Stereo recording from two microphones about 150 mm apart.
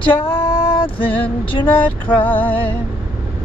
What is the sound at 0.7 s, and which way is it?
Mantra, 35° left (ahead or behind).